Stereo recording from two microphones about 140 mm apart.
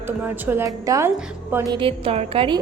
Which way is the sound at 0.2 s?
15° right (ahead or behind).